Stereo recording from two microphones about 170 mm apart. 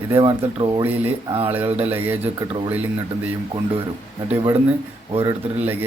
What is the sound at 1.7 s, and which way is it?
Speech, 10° right (ahead or behind).